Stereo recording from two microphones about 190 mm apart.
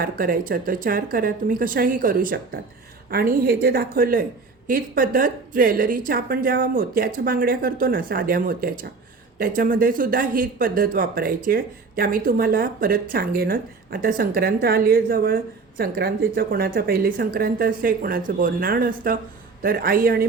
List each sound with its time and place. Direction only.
0.0 s speech: 50° right (ahead or behind)